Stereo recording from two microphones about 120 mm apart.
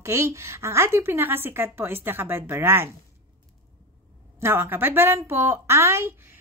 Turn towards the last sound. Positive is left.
turn(degrees=-25)  # may be behind; listen again after turning